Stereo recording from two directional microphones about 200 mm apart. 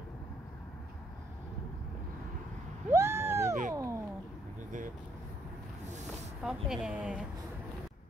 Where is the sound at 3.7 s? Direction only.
15° right (ahead or behind).